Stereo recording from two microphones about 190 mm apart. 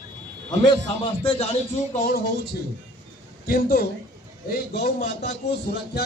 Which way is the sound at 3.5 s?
55° left (ahead or behind).